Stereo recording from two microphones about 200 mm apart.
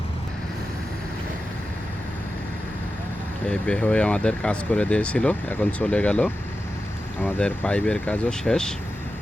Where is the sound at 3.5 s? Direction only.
5° left (ahead or behind).